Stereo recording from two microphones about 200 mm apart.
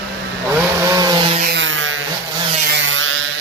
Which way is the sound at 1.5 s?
65° right (ahead or behind).